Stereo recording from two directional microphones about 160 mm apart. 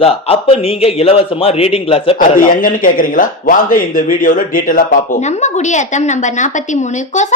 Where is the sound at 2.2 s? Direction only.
60° left (ahead or behind).